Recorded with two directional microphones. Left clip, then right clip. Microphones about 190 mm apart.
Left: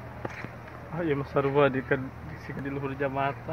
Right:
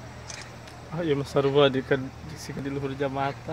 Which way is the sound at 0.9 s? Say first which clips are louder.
Right 2 dB; 80° right.